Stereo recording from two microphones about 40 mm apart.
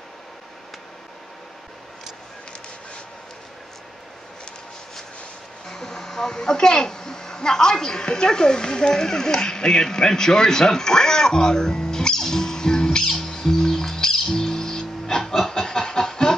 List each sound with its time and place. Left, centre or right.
5.7 s a woman's voice: centre
13.1 s music: centre